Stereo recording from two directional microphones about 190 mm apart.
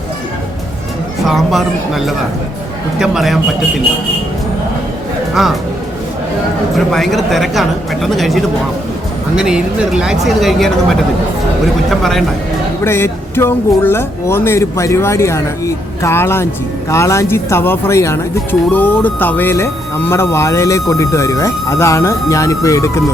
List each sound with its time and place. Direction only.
1.2 s speech: centre (ahead or behind)
5.3 s speech: centre (ahead or behind)
6.7 s speech: centre (ahead or behind)
11.9 s speech: centre (ahead or behind)
12.8 s speech: 10° left (ahead or behind)